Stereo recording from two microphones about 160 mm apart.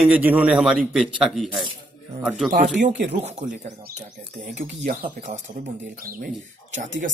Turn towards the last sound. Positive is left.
turn(degrees=-55)  # may be behind; listen again after turning